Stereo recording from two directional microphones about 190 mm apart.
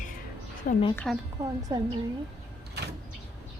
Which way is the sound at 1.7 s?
20° right (ahead or behind).